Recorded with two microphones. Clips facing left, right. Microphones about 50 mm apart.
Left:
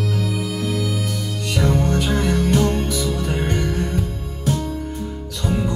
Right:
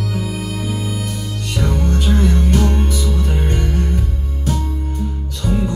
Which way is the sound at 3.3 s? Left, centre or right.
Left.